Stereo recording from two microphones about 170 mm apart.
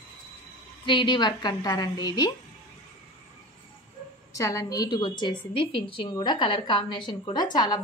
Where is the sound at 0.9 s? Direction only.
25° left (ahead or behind).